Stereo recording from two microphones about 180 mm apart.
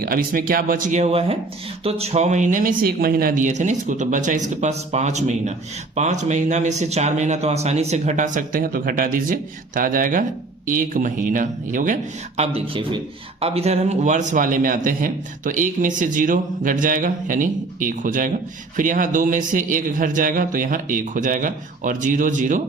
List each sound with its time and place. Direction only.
0.0 s a man's voice: 55° right (ahead or behind)
12.4 s a man's voice: 30° right (ahead or behind)